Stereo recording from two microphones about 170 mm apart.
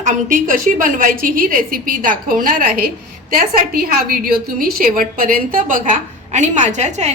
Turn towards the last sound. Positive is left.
turn(degrees=-40)  # may be behind; listen again after turning